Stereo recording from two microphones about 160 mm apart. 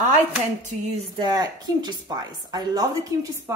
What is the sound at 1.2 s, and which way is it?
A woman's voice, 25° right (ahead or behind).